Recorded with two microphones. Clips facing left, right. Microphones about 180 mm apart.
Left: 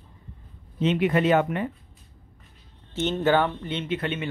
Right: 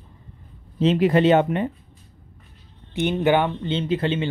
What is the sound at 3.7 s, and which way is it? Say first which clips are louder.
Speech: right 9 dB; 30° right (ahead or behind).